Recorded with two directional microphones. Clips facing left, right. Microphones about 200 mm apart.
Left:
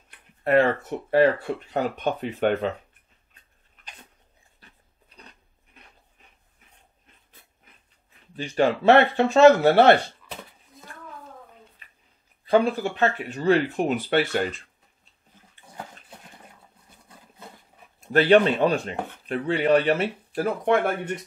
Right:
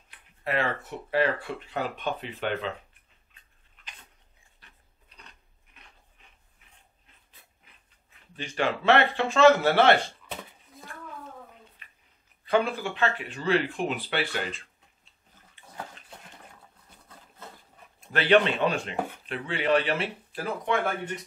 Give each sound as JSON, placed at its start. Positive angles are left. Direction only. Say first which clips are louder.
{"t": 0.4, "sound": "speech", "louder": "left 9 dB", "side_deg": 50}
{"t": 8.4, "sound": "speech", "louder": "left 6 dB", "side_deg": 35}
{"t": 12.4, "sound": "speech", "louder": "left 5 dB", "side_deg": 40}
{"t": 18.1, "sound": "speech", "louder": "left 5 dB", "side_deg": 40}